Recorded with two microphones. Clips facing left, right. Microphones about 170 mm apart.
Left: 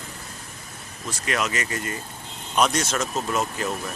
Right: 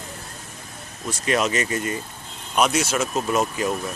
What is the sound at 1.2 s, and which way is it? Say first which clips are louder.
Speech: right 5 dB; 25° right (ahead or behind).